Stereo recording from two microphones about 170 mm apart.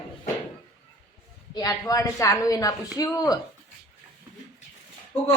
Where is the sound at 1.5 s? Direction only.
20° left (ahead or behind).